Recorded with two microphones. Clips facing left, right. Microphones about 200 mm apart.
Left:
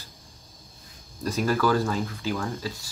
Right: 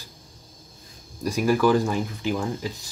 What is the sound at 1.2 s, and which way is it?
Speech, 10° right (ahead or behind).